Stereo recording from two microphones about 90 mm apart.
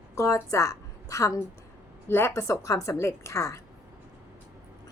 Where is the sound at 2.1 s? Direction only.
25° left (ahead or behind).